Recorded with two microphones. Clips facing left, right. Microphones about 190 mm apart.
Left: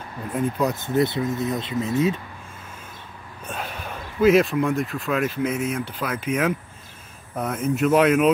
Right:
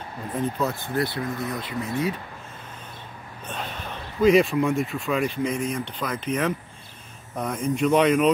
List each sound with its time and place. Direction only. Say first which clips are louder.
0.3 s speech: left 3 dB; 10° left (ahead or behind)
3.4 s speech: left 1 dB; 5° left (ahead or behind)